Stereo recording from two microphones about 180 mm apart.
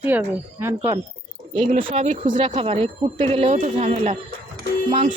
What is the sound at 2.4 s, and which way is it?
Speech, 30° right (ahead or behind).